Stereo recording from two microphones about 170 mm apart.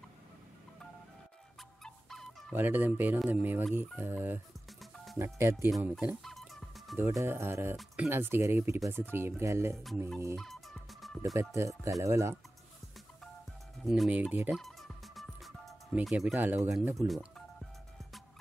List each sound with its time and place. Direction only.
1.6 s music: centre (ahead or behind)
2.5 s speech: 10° right (ahead or behind)
5.8 s music: 10° right (ahead or behind)
7.0 s speech: 15° right (ahead or behind)
7.7 s speech: 5° right (ahead or behind)
8.1 s speech: 15° right (ahead or behind)
10.3 s fowl: centre (ahead or behind)
11.3 s speech: 15° right (ahead or behind)
13.8 s speech: centre (ahead or behind)
14.6 s music: centre (ahead or behind)
16.7 s speech: centre (ahead or behind)